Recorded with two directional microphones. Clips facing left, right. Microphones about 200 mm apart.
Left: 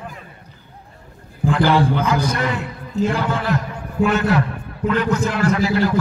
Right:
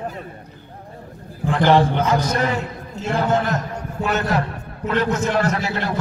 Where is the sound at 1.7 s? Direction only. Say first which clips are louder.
Right 1 dB; 35° right (ahead or behind).